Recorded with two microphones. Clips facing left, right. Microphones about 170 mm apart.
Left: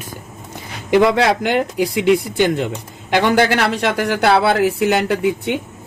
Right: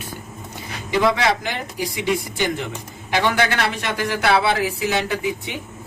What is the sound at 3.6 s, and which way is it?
Speech, 75° left (ahead or behind).